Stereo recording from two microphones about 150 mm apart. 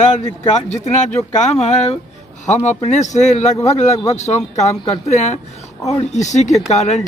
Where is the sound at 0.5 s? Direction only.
50° left (ahead or behind).